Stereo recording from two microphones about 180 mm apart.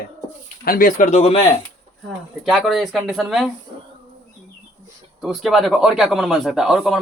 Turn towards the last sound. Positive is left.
turn(degrees=-5)  # may be behind; listen again after turning